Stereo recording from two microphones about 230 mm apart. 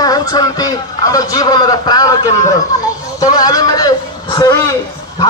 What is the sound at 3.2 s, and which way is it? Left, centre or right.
A man's voice, centre.